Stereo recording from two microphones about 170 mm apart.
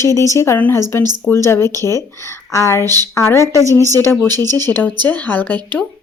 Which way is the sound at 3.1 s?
15° left (ahead or behind).